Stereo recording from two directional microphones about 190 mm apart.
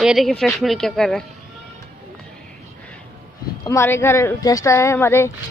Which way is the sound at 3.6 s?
15° left (ahead or behind).